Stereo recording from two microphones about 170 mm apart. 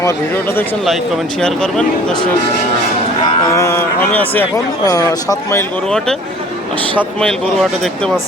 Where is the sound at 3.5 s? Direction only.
15° left (ahead or behind).